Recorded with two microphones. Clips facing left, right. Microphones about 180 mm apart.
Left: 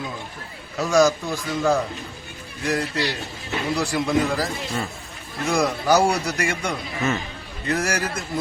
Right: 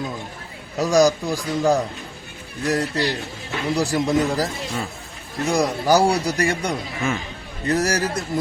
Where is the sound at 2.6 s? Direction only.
40° right (ahead or behind).